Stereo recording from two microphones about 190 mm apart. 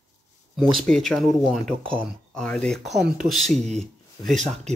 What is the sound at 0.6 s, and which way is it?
Speech, centre (ahead or behind).